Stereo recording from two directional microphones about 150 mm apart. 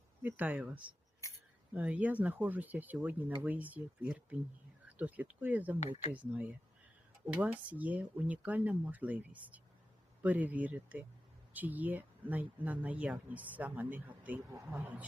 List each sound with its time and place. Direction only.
0.2 s speech: 10° right (ahead or behind)
1.2 s scissors: 20° left (ahead or behind)
1.7 s speech: 10° right (ahead or behind)